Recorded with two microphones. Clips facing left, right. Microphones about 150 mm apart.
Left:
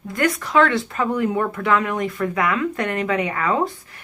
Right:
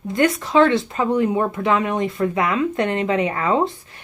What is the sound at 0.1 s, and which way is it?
Speech, 25° right (ahead or behind).